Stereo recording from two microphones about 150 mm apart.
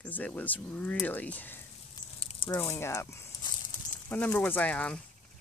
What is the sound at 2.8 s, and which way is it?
Speech, 15° left (ahead or behind).